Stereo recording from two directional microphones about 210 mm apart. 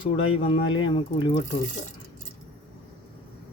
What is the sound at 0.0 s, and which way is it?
Speech, 25° left (ahead or behind).